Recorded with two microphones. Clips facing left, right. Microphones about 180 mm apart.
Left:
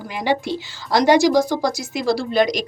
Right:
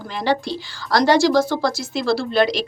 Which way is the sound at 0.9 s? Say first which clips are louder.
Left 1 dB; 20° left (ahead or behind).